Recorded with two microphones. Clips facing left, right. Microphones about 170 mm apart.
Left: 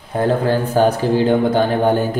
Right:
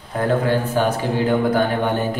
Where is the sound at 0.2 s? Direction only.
35° left (ahead or behind).